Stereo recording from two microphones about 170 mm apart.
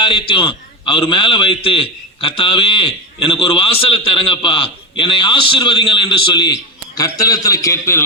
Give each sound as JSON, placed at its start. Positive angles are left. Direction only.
{"t": 0.0, "sound": "a man's voice", "side_deg": 30}